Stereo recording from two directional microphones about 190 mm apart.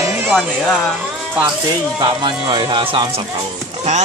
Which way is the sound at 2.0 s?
25° right (ahead or behind).